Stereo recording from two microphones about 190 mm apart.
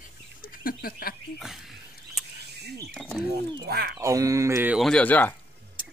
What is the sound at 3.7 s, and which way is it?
Speech, 55° right (ahead or behind).